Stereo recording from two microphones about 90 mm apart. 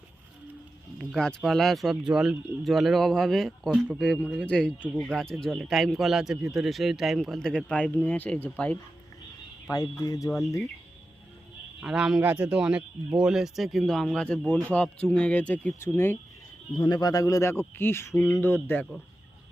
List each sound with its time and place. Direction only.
1.1 s a man's voice: 5° left (ahead or behind)
9.6 s a man's voice: 35° left (ahead or behind)
11.8 s a man's voice: 10° right (ahead or behind)
12.2 s a man's voice: 20° right (ahead or behind); by 16.1 s 25° left (ahead or behind)
16.7 s a man's voice: 55° left (ahead or behind); by 18.9 s 20° left (ahead or behind)